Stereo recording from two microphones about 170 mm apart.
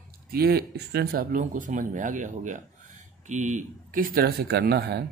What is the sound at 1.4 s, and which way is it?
Speech, 45° right (ahead or behind).